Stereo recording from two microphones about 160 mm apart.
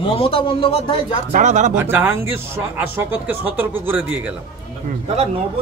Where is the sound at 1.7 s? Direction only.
10° right (ahead or behind).